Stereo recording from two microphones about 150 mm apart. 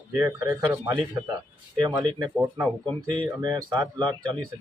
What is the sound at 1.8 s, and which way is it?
Speech, 25° right (ahead or behind).